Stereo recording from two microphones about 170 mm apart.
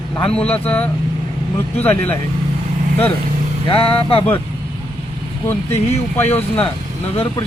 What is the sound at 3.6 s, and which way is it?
Speech, 30° left (ahead or behind).